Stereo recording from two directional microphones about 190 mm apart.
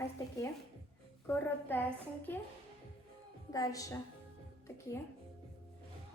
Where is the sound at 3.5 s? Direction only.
20° left (ahead or behind).